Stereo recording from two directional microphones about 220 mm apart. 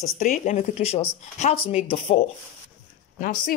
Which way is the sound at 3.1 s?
40° left (ahead or behind).